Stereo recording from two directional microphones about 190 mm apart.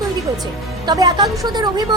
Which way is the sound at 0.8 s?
20° right (ahead or behind).